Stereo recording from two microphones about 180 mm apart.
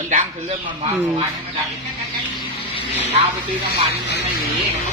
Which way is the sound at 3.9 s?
70° left (ahead or behind).